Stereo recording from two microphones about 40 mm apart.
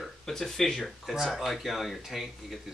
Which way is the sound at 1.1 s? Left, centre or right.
Centre.